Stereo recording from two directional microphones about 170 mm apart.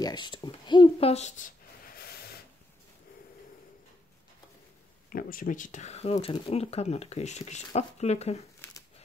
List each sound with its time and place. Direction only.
0.0 s a woman's voice: 25° left (ahead or behind); by 1.5 s 45° left (ahead or behind)
5.1 s speech: 55° left (ahead or behind)
8.6 s a sound: 15° left (ahead or behind)